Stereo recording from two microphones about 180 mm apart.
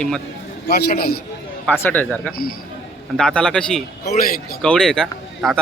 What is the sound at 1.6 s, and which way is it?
A man's voice, 10° left (ahead or behind).